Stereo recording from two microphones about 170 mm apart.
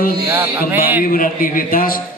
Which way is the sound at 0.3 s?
10° right (ahead or behind).